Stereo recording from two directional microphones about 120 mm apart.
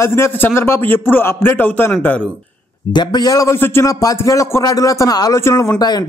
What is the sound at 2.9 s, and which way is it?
A man's voice, 40° left (ahead or behind).